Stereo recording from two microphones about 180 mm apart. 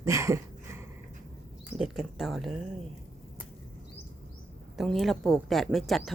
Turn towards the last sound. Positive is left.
turn(degrees=0)  # may be behind; listen again after turning